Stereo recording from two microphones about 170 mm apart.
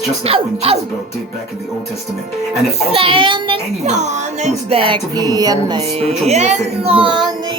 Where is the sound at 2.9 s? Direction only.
30° right (ahead or behind).